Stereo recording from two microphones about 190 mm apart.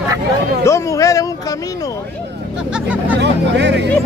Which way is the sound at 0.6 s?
15° left (ahead or behind).